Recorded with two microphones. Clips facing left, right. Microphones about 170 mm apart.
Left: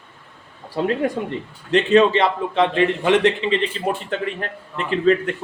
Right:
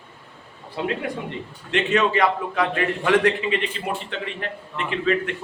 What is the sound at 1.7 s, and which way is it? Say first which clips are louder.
A man's voice: left 6 dB; 30° left (ahead or behind).